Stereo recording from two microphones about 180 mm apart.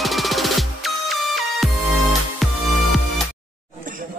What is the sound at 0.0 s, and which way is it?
Music, centre (ahead or behind).